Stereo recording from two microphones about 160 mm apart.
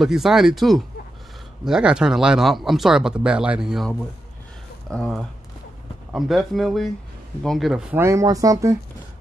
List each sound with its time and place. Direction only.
0.0 s speech: centre (ahead or behind)
8.0 s speech: 20° right (ahead or behind)